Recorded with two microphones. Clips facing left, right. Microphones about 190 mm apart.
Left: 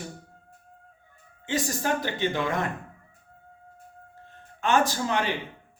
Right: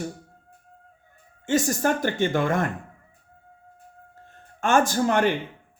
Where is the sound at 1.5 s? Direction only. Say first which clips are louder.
Right 5 dB; 50° right (ahead or behind).